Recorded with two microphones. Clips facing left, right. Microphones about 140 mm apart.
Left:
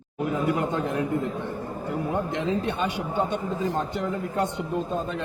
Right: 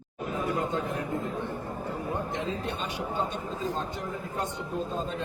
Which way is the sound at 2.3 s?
70° left (ahead or behind).